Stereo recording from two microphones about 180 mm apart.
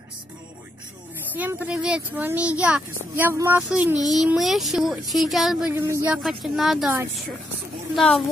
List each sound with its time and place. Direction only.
1.3 s speech: 10° right (ahead or behind)
5.7 s speech: 15° right (ahead or behind)
7.9 s speech: centre (ahead or behind)